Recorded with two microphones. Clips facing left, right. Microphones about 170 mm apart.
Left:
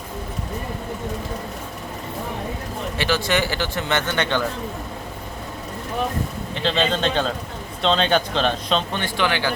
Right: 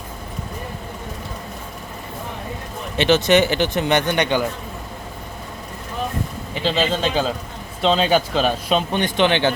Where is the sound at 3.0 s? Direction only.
20° right (ahead or behind).